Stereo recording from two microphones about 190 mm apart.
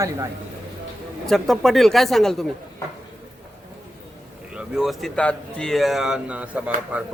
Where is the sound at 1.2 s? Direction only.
Centre (ahead or behind).